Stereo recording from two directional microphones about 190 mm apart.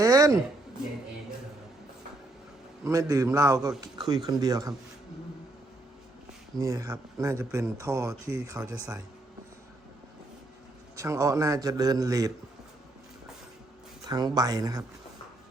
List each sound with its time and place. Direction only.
0.0 s a sound: 15° right (ahead or behind)
2.8 s speech: 15° right (ahead or behind)
6.6 s speech: 15° right (ahead or behind)
10.9 s speech: 15° right (ahead or behind)
14.1 s speech: 20° right (ahead or behind)